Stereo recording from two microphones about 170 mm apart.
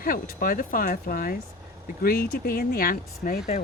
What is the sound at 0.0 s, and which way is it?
Speech, 60° left (ahead or behind).